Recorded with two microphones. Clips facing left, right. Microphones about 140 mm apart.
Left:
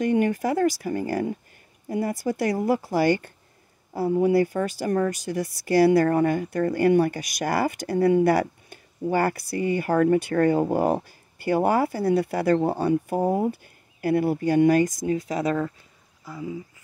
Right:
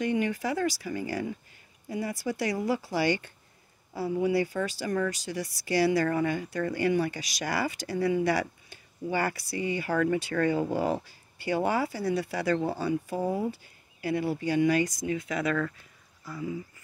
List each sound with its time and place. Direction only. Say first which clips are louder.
0.0 s speech: left 6 dB; 50° left (ahead or behind); by 15.7 s 30° left (ahead or behind)
16.3 s speech: left 2 dB; 20° left (ahead or behind)